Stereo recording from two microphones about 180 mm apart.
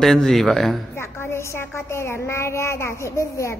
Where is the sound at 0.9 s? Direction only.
15° left (ahead or behind).